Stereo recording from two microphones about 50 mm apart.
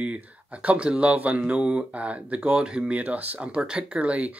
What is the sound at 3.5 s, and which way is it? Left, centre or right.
Speech, centre.